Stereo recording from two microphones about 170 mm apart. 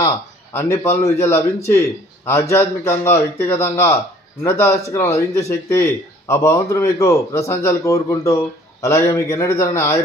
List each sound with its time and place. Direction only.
0.0 s a man's voice: 15° left (ahead or behind)